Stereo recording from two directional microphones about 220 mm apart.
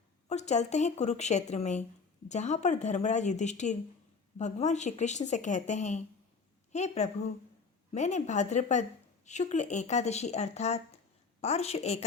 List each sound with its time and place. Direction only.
0.3 s a woman's voice: 30° left (ahead or behind)